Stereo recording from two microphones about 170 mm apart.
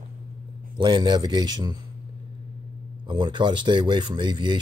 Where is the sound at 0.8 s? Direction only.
25° right (ahead or behind).